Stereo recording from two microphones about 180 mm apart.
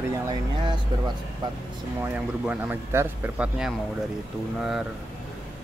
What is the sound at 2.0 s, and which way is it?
Speech, 10° right (ahead or behind).